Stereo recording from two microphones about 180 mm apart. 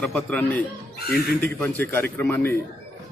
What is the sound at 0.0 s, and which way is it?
A man's voice, 5° left (ahead or behind).